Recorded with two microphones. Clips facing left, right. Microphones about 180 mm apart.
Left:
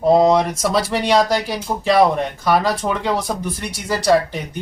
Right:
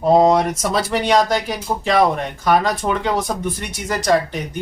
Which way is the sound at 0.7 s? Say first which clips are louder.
Left 1 dB; 30° left (ahead or behind).